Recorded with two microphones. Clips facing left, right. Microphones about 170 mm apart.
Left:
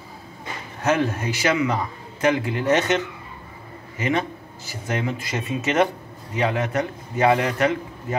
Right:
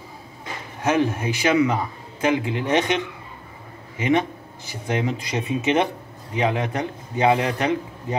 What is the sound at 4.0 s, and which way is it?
A man's voice, 10° right (ahead or behind).